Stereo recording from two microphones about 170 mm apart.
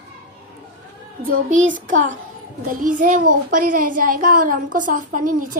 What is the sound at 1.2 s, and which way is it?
A child's voice, 55° right (ahead or behind).